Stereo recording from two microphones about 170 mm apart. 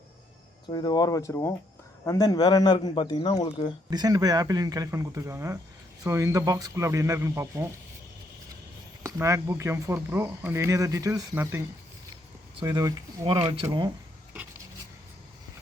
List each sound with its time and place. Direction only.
0.7 s a man's voice: 25° left (ahead or behind)
3.8 s speech: 25° right (ahead or behind)
9.0 s speech: 15° right (ahead or behind)